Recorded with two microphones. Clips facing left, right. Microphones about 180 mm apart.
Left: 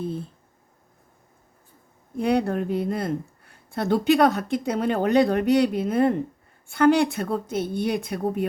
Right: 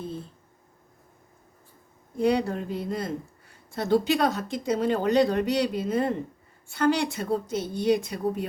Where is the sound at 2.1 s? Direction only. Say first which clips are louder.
Left 2 dB; 55° left (ahead or behind).